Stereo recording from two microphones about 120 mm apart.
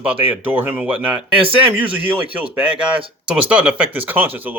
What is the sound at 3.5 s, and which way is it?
Speech, 15° right (ahead or behind).